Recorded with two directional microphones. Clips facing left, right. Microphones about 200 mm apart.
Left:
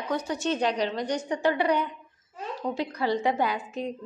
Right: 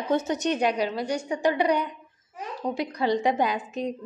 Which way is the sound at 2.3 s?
15° right (ahead or behind).